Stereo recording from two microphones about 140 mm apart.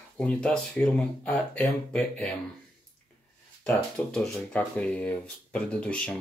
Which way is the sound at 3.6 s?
10° left (ahead or behind).